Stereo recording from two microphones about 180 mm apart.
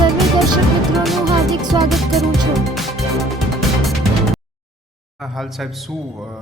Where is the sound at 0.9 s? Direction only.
Centre (ahead or behind).